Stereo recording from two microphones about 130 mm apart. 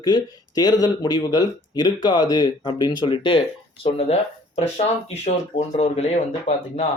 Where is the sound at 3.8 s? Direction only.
55° left (ahead or behind).